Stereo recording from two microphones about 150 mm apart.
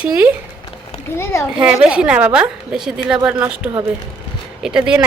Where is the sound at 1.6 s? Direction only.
5° right (ahead or behind).